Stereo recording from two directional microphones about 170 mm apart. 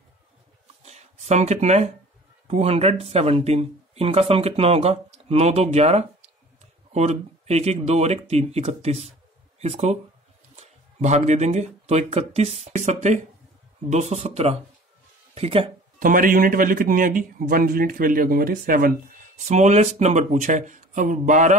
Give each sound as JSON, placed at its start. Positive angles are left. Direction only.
{"t": 0.8, "sound": "a sound", "side_deg": -40}
{"t": 2.4, "sound": "speech", "side_deg": -40}
{"t": 16.0, "sound": "speech", "side_deg": -55}